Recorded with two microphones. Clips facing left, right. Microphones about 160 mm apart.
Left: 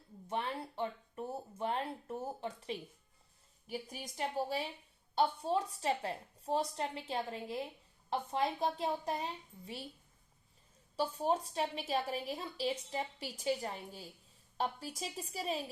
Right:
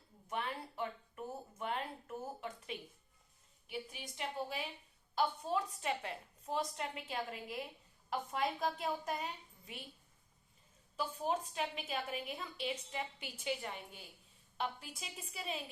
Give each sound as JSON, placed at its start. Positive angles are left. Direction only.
{"t": 0.3, "sound": "a sound", "side_deg": 30}
{"t": 3.7, "sound": "a woman's voice", "side_deg": 40}
{"t": 10.9, "sound": "a woman's voice", "side_deg": 35}